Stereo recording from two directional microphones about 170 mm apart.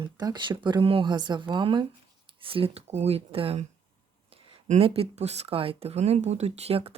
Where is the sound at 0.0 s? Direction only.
25° right (ahead or behind).